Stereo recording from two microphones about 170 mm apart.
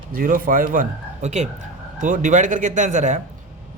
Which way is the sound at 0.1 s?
55° right (ahead or behind).